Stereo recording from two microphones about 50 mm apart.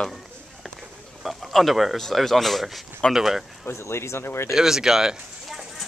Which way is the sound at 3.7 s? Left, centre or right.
Left.